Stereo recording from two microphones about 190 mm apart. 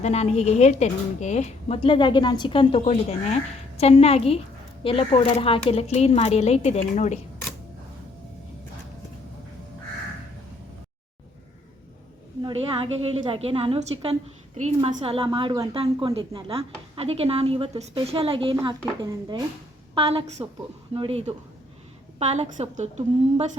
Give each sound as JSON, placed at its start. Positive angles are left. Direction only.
{"t": 0.0, "sound": "a woman's voice", "side_deg": 35}
{"t": 12.4, "sound": "a woman's voice", "side_deg": -25}